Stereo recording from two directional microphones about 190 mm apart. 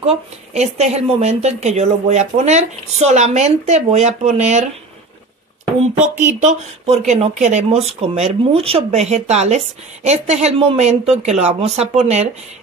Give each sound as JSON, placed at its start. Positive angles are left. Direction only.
{"t": 0.0, "sound": "speech", "side_deg": -30}
{"t": 5.9, "sound": "speech", "side_deg": -40}